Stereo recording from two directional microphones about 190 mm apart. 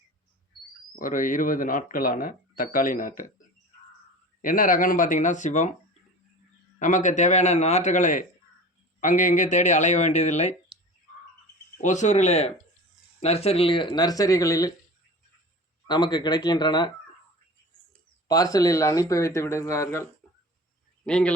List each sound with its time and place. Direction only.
0.9 s speech: 45° left (ahead or behind)
4.4 s speech: 45° left (ahead or behind)
6.7 s speech: 40° left (ahead or behind)
11.8 s speech: 40° left (ahead or behind); by 14.7 s 20° left (ahead or behind)
15.9 s speech: 20° left (ahead or behind)
18.3 s speech: 20° left (ahead or behind)